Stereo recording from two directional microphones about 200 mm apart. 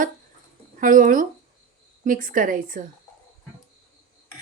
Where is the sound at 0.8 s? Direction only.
40° right (ahead or behind).